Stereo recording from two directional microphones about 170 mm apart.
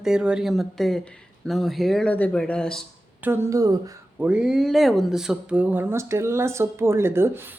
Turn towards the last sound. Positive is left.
turn(degrees=-15)  # may be behind; listen again after turning